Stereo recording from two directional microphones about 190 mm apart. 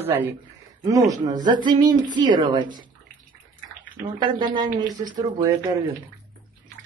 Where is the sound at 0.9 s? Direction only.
15° right (ahead or behind).